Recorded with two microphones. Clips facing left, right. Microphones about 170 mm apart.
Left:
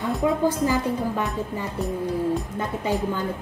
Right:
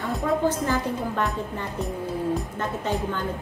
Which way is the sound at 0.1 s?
Centre (ahead or behind).